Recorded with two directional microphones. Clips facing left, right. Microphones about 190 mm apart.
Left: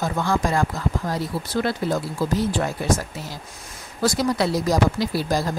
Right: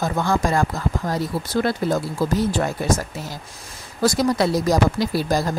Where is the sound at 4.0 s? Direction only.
45° right (ahead or behind).